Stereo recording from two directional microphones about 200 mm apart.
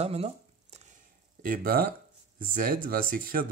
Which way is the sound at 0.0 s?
30° right (ahead or behind).